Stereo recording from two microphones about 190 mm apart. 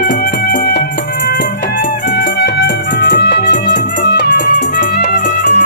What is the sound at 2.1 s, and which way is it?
Music, 65° left (ahead or behind).